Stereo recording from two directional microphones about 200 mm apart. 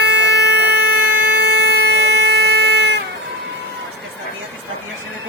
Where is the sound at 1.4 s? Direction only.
55° right (ahead or behind).